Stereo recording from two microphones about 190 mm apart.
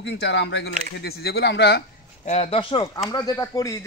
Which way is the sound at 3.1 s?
20° left (ahead or behind).